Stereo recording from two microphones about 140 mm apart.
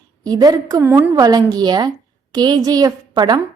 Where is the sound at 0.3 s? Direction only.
30° right (ahead or behind).